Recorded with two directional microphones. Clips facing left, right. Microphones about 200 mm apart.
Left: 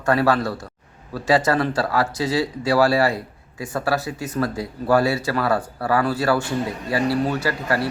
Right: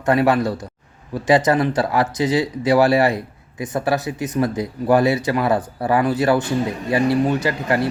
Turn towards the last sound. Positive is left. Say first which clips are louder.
# right 3 dB
turn(degrees=-20)  # may be behind; listen again after turning